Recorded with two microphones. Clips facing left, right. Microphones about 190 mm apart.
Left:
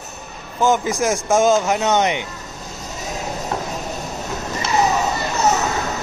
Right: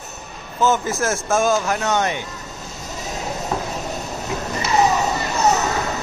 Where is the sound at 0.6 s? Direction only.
15° left (ahead or behind).